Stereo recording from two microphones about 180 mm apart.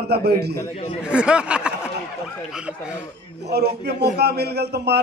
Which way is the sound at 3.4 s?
65° right (ahead or behind).